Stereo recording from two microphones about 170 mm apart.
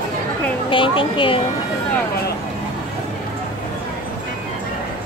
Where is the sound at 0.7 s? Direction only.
30° left (ahead or behind).